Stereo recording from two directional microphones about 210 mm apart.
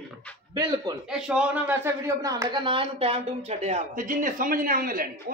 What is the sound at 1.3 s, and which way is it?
A woman's voice, 10° right (ahead or behind).